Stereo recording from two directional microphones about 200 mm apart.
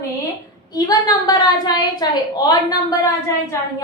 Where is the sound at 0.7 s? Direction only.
20° left (ahead or behind).